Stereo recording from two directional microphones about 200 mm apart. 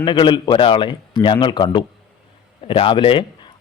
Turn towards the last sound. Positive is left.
turn(degrees=25)  # may be behind; listen again after turning